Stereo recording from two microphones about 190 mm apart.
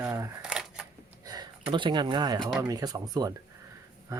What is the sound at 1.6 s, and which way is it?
Speech, 25° right (ahead or behind).